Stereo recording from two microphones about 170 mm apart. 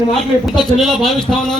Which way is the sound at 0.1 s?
Centre (ahead or behind).